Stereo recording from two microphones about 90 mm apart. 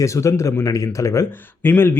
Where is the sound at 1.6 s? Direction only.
25° left (ahead or behind).